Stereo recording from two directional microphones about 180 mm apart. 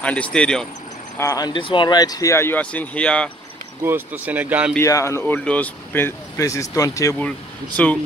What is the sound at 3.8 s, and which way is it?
Speech, 10° right (ahead or behind).